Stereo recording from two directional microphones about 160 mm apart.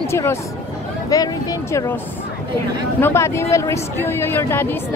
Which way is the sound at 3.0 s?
15° left (ahead or behind).